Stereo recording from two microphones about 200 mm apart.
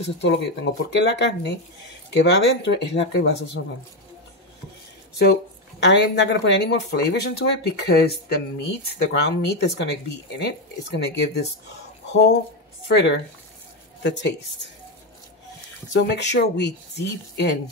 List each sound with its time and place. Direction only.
0.2 s speech: 60° left (ahead or behind)
5.2 s a woman's voice: 55° left (ahead or behind)
15.9 s speech: 60° left (ahead or behind)